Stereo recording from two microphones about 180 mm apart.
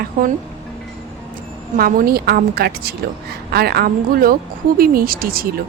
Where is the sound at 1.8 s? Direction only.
55° right (ahead or behind).